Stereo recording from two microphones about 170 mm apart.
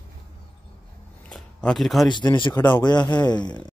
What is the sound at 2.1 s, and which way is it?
Speech, 25° left (ahead or behind).